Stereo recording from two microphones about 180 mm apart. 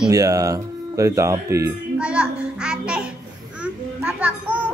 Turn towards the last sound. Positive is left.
turn(degrees=-5)  # may be behind; listen again after turning